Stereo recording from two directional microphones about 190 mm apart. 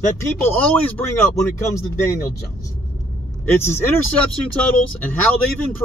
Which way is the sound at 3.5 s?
10° left (ahead or behind).